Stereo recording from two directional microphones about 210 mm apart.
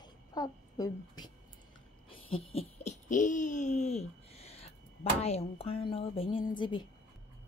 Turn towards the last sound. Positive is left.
turn(degrees=20)  # may be behind; listen again after turning